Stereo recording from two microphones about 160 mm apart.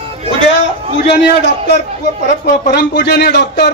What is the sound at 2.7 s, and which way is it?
Speech, 90° left.